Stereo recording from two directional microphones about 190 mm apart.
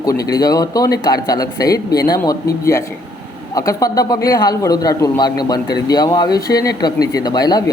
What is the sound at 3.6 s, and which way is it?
A man's voice, 20° left (ahead or behind).